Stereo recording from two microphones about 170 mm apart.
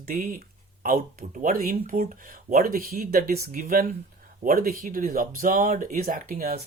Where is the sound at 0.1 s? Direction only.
55° right (ahead or behind).